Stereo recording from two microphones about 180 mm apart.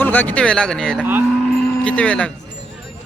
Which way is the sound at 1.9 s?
5° left (ahead or behind).